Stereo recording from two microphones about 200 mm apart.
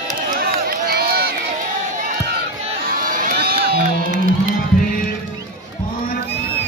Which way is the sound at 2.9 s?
45° right (ahead or behind).